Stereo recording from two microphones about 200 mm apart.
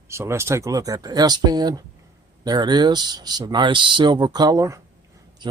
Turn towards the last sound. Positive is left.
turn(degrees=-15)  # may be behind; listen again after turning